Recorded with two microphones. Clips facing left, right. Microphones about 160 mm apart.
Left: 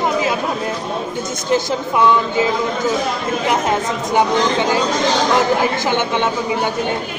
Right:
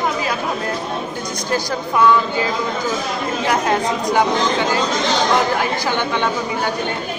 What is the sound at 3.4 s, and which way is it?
Speech, 20° left (ahead or behind).